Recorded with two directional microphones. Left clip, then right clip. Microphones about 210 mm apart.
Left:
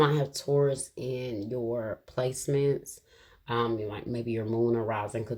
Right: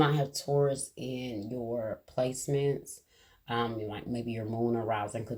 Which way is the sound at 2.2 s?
45° left (ahead or behind).